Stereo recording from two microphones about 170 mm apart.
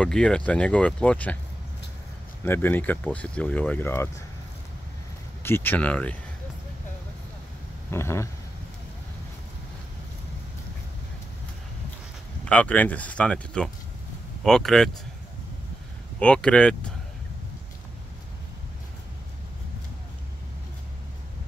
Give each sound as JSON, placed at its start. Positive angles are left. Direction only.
{"t": 0.0, "sound": "speech", "side_deg": 5}
{"t": 2.4, "sound": "speech", "side_deg": 15}
{"t": 5.4, "sound": "speech", "side_deg": 10}
{"t": 7.9, "sound": "speech", "side_deg": 15}
{"t": 12.4, "sound": "speech", "side_deg": 10}
{"t": 16.2, "sound": "speech", "side_deg": 5}